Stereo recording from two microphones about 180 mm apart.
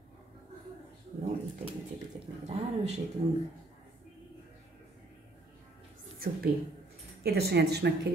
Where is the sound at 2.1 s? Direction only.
40° right (ahead or behind).